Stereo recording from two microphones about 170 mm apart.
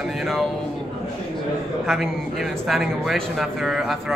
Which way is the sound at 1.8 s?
Centre (ahead or behind).